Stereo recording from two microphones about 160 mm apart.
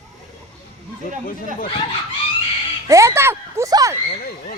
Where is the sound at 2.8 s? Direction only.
20° right (ahead or behind).